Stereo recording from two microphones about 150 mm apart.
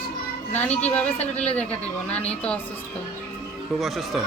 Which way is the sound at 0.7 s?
45° left (ahead or behind).